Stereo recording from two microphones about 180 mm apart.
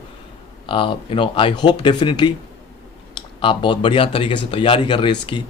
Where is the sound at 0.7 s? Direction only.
30° left (ahead or behind).